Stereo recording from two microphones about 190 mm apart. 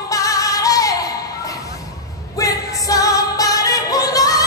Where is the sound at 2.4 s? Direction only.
20° left (ahead or behind).